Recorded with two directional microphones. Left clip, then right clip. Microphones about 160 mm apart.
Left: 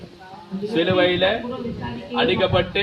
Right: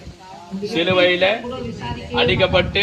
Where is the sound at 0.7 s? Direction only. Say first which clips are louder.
Right 2 dB; 15° left (ahead or behind).